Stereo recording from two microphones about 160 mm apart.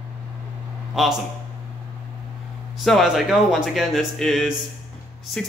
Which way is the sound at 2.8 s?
Centre (ahead or behind).